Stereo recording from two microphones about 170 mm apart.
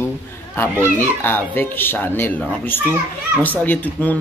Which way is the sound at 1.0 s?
10° left (ahead or behind).